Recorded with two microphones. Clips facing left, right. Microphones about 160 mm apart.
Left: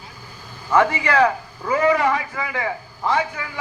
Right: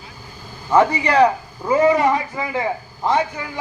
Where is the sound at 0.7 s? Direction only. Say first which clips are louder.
Right 2 dB; 20° right (ahead or behind).